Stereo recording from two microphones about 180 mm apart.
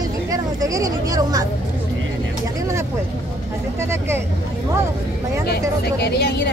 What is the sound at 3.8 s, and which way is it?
Speech, 15° right (ahead or behind).